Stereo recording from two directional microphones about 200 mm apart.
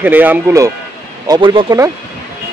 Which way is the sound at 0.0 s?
10° right (ahead or behind).